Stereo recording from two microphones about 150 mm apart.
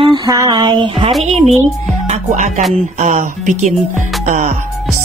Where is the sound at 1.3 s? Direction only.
45° right (ahead or behind).